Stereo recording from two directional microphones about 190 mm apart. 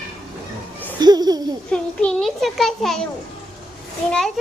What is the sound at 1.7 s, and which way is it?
A child's voice, 5° left (ahead or behind).